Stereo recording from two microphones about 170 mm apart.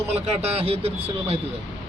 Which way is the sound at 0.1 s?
35° right (ahead or behind).